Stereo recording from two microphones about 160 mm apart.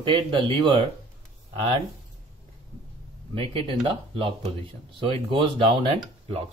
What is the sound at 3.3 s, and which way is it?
Speech, 35° right (ahead or behind).